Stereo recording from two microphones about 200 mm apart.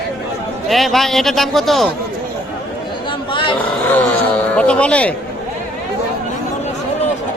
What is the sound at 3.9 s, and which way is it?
Speech, 10° left (ahead or behind).